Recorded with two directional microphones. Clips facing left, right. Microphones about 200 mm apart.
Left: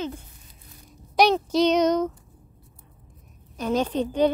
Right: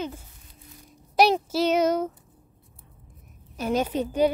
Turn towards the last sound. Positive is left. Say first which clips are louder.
# left 1 dB
turn(degrees=-10)  # may be behind; listen again after turning